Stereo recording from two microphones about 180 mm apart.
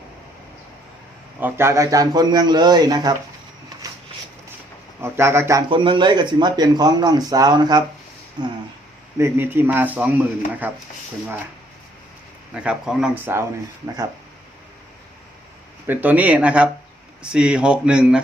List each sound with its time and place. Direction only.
1.4 s speech: 10° right (ahead or behind)
5.0 s speech: 15° right (ahead or behind)
9.1 s speech: 15° right (ahead or behind)
12.5 s speech: 5° right (ahead or behind)
15.9 s speech: 10° right (ahead or behind)